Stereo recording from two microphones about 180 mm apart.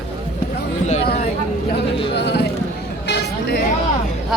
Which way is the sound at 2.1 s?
70° left (ahead or behind).